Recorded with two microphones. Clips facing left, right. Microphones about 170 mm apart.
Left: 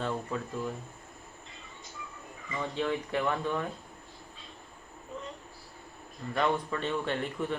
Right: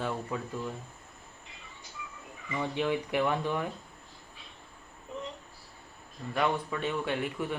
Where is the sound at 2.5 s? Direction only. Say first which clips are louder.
Right 2 dB; 10° right (ahead or behind).